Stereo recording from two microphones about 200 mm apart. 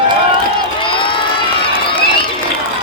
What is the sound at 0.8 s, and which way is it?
Crowd, 25° left (ahead or behind).